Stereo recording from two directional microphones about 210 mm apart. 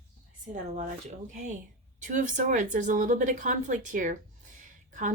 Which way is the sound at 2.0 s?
40° right (ahead or behind).